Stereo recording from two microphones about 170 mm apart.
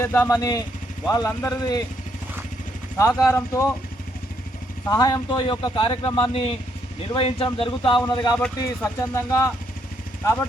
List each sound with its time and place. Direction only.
0.0 s a man's voice: 15° left (ahead or behind)
3.0 s speech: 15° left (ahead or behind)
4.9 s a man's voice: 25° left (ahead or behind)